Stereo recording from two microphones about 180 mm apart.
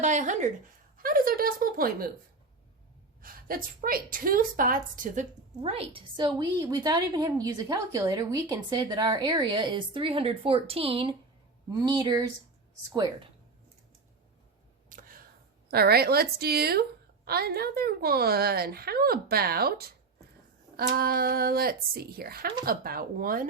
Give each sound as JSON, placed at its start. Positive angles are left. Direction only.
{"t": 0.0, "sound": "speech", "side_deg": -40}
{"t": 0.9, "sound": "a woman's voice", "side_deg": -55}
{"t": 3.2, "sound": "a woman's voice", "side_deg": -55}
{"t": 5.6, "sound": "a woman's voice", "side_deg": -30}
{"t": 11.7, "sound": "a woman's voice", "side_deg": -20}
{"t": 14.8, "sound": "a sound", "side_deg": -50}
{"t": 15.7, "sound": "a woman's voice", "side_deg": -60}